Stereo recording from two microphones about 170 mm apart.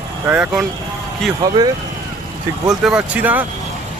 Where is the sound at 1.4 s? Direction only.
20° right (ahead or behind).